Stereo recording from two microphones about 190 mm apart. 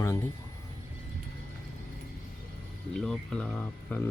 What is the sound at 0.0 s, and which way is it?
Speech, 15° left (ahead or behind).